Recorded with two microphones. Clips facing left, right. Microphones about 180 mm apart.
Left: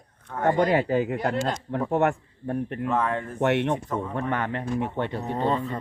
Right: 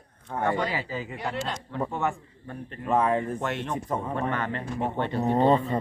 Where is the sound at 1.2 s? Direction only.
45° left (ahead or behind).